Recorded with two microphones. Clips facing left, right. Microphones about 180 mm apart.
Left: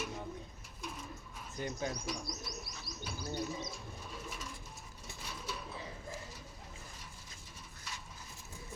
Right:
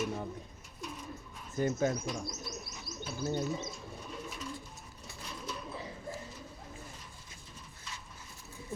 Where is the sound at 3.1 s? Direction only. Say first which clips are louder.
Right 6 dB; 25° right (ahead or behind).